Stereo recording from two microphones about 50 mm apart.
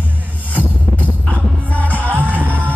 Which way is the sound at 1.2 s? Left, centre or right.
Left.